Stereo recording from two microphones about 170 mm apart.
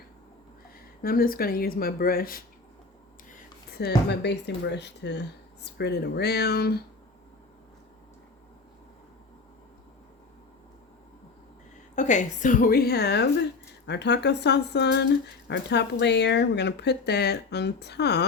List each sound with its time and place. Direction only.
1.0 s speech: 60° left (ahead or behind)
3.7 s speech: 70° left (ahead or behind); by 5.2 s 90° left
5.6 s speech: 75° left (ahead or behind)
11.9 s a woman's voice: 45° left (ahead or behind); by 13.2 s 75° left (ahead or behind)
13.8 s speech: 90° left